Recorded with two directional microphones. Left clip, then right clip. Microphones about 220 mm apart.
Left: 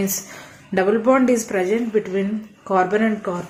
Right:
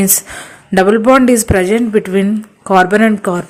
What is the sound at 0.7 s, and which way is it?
A woman's voice, 45° right (ahead or behind).